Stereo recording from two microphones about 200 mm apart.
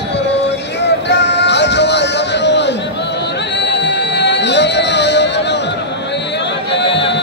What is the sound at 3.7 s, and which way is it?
Music, 60° left (ahead or behind).